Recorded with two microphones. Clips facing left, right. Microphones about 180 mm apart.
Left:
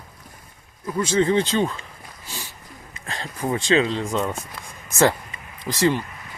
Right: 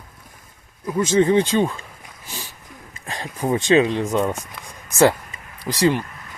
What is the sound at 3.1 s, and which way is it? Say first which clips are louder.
Speech: right 3 dB; 15° right (ahead or behind).